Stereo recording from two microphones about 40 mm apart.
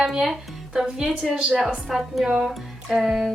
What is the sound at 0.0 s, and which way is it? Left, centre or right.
Speech, centre.